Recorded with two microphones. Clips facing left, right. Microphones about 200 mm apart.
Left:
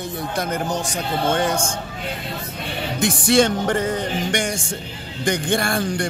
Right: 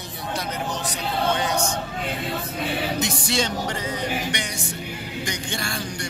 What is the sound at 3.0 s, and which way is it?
Music, 55° left (ahead or behind).